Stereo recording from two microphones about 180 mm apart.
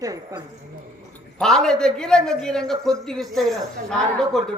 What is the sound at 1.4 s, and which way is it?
Speech, 5° left (ahead or behind).